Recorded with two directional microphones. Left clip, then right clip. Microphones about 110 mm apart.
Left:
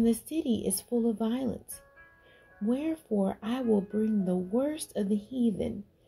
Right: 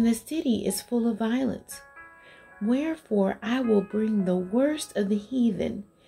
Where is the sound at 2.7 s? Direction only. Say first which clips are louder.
Right 4 dB; 30° left (ahead or behind).